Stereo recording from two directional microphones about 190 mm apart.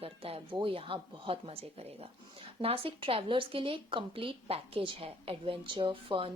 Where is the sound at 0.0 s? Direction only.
30° right (ahead or behind).